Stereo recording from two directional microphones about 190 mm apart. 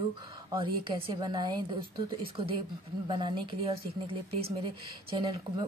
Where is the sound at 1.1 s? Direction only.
25° right (ahead or behind).